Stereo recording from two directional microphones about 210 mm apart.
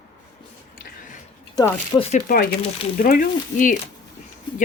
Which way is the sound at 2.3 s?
45° left (ahead or behind).